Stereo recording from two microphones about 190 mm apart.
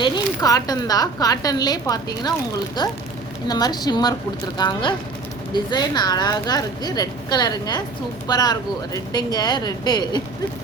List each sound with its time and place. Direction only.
0.0 s a woman's voice: 20° left (ahead or behind)